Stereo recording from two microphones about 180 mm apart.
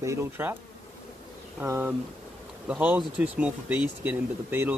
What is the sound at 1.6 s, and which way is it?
Speech, 15° right (ahead or behind).